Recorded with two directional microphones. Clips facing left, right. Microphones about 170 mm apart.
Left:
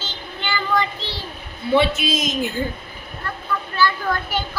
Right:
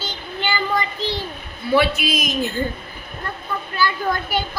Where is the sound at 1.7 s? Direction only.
25° left (ahead or behind).